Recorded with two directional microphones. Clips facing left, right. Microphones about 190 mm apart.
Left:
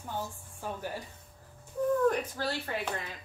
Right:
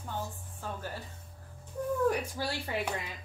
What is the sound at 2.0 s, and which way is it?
A woman's voice, 10° right (ahead or behind).